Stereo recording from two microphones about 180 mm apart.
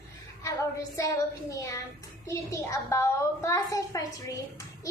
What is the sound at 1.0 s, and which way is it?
A woman's voice, 20° left (ahead or behind).